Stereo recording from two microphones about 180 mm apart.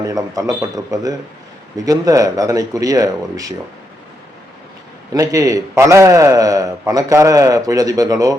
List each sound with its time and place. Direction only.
0.0 s a man's voice: 20° right (ahead or behind)
5.1 s a man's voice: 20° right (ahead or behind)